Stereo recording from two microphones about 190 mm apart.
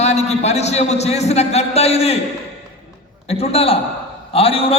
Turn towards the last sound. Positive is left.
turn(degrees=30)  # may be behind; listen again after turning